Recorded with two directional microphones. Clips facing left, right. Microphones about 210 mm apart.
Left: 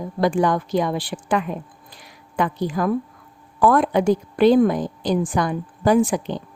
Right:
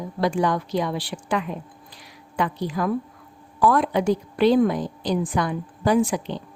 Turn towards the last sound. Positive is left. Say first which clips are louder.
# left 3 dB
turn(degrees=50)  # may be behind; listen again after turning